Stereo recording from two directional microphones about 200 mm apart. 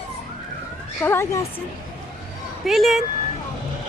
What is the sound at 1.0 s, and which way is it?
Speech, 10° left (ahead or behind).